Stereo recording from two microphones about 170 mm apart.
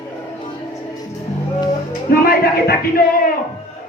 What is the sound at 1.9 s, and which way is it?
Speech, 60° left (ahead or behind).